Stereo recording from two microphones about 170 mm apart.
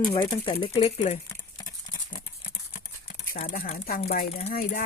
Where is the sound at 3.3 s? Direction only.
55° left (ahead or behind).